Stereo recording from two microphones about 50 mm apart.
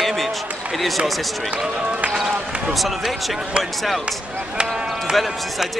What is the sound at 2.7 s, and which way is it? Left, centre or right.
Speech, centre.